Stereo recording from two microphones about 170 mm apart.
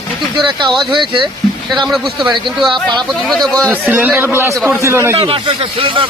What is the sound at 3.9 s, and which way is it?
A man's voice, 10° right (ahead or behind).